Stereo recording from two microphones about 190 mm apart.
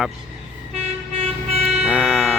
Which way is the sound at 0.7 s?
35° right (ahead or behind).